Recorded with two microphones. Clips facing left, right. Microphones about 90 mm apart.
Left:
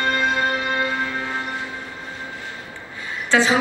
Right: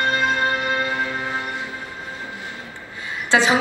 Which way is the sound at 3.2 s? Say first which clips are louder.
Even; 20° right (ahead or behind).